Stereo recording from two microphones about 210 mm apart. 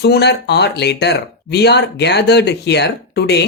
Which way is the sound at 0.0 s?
50° left (ahead or behind).